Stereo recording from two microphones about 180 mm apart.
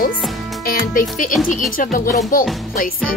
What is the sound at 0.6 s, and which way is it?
A child's voice, 55° left (ahead or behind).